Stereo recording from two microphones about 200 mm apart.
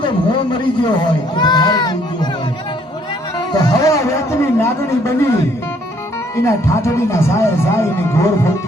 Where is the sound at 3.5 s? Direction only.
15° left (ahead or behind).